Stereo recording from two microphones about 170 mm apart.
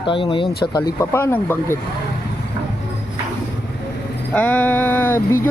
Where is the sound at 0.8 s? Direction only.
15° left (ahead or behind).